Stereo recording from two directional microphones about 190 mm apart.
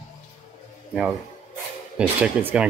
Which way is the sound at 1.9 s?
5° right (ahead or behind).